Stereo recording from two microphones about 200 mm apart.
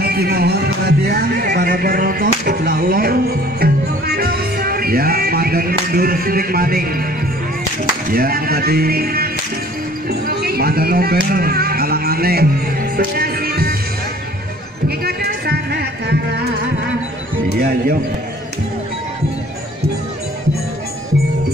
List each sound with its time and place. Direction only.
0.0 s music: 50° right (ahead or behind)
8.1 s music: 45° right (ahead or behind)
14.9 s music: 50° right (ahead or behind)
17.5 s speech: 50° right (ahead or behind)